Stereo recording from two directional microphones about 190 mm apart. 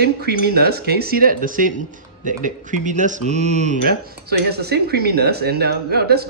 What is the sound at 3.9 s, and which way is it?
Speech, 55° right (ahead or behind).